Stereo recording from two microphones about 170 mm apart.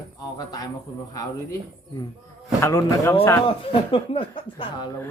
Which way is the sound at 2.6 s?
15° left (ahead or behind).